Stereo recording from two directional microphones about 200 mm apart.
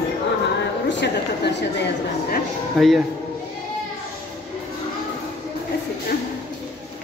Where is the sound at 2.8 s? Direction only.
Centre (ahead or behind).